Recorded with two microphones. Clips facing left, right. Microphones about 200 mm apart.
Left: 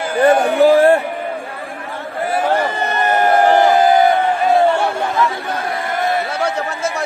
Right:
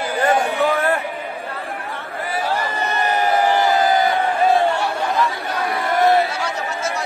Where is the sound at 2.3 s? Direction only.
55° left (ahead or behind).